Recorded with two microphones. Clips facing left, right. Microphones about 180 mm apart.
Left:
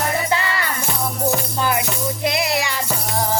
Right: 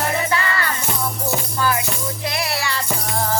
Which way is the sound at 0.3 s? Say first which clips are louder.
Even; 20° left (ahead or behind).